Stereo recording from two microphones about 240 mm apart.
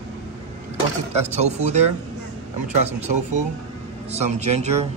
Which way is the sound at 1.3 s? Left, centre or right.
Right.